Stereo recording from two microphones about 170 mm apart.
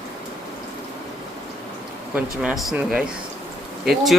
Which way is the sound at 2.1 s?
5° right (ahead or behind).